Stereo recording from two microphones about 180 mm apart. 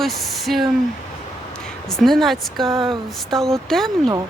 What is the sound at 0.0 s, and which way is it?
Speech, centre (ahead or behind).